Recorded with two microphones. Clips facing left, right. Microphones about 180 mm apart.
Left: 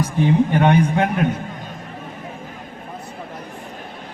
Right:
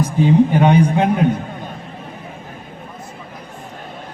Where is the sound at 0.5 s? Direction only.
15° right (ahead or behind).